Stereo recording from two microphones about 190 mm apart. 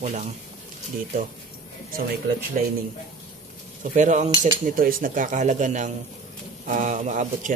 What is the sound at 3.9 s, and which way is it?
Speech, 40° right (ahead or behind).